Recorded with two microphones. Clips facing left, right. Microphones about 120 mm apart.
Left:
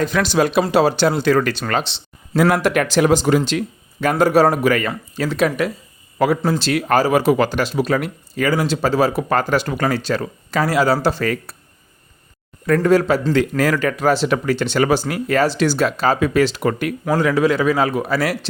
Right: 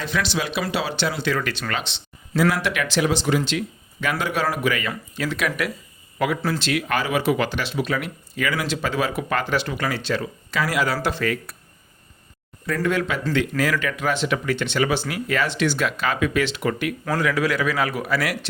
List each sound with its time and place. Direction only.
0.0 s speech: 45° left (ahead or behind)
2.3 s speech: 50° left (ahead or behind); by 11.5 s 35° left (ahead or behind)
12.6 s speech: 50° left (ahead or behind)
12.9 s speech: 35° left (ahead or behind)
17.2 s speech: 30° left (ahead or behind)